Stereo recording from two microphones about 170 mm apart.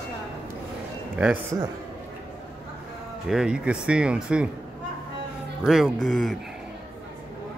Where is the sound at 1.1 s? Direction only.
10° right (ahead or behind).